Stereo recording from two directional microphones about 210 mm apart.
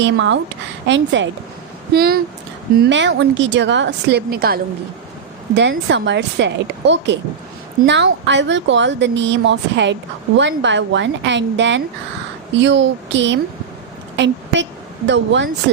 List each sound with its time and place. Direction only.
0.0 s a woman's voice: 60° right (ahead or behind)
1.9 s speech: 45° right (ahead or behind)
2.9 s a woman's voice: 60° right (ahead or behind)